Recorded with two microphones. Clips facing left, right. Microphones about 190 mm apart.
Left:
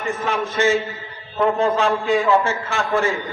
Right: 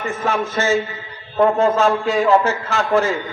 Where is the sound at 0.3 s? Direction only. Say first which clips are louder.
Right 1 dB; 40° right (ahead or behind).